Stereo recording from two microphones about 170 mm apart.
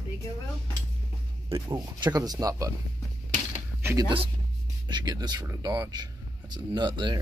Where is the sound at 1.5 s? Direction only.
25° right (ahead or behind).